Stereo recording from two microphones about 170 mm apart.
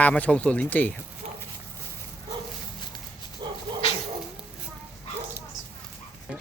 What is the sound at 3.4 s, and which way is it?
Dog, 25° right (ahead or behind).